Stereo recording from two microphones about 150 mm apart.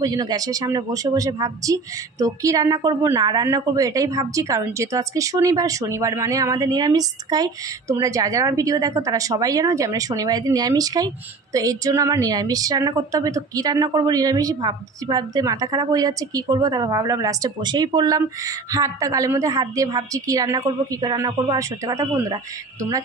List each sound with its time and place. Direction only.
0.0 s a woman's voice: 25° right (ahead or behind)